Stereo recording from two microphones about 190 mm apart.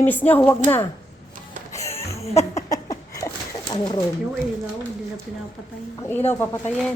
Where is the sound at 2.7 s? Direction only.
20° left (ahead or behind).